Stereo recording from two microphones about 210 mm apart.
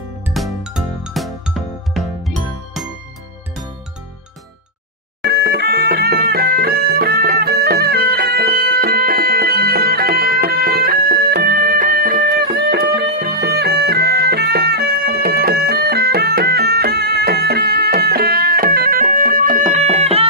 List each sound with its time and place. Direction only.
0.3 s music: centre (ahead or behind)
5.2 s music: 50° right (ahead or behind); by 20.2 s 30° right (ahead or behind)